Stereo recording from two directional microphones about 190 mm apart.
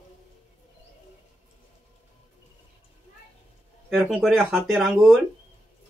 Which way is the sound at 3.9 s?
5° right (ahead or behind).